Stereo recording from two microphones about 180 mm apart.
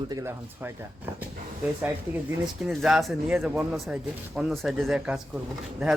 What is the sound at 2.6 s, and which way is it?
Speech, centre (ahead or behind).